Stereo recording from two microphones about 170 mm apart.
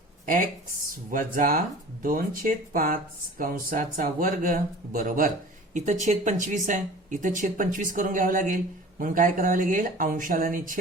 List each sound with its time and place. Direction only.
1.1 s speech: 55° right (ahead or behind)